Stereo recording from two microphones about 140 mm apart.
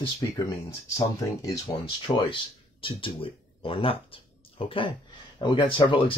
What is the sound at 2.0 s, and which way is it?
Speech, 40° left (ahead or behind).